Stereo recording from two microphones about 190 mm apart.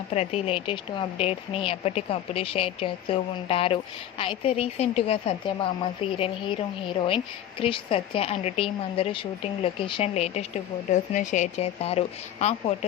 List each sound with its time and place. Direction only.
0.1 s a woman's voice: 35° left (ahead or behind)